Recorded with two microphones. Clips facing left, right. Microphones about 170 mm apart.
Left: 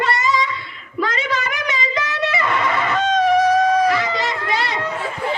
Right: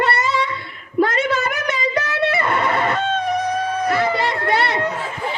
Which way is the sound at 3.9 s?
55° right (ahead or behind).